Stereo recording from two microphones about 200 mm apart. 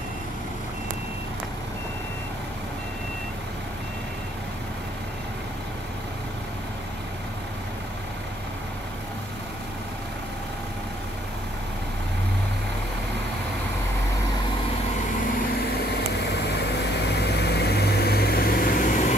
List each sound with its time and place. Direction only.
17.0 s vehicle: 55° left (ahead or behind); by 19.1 s 40° left (ahead or behind)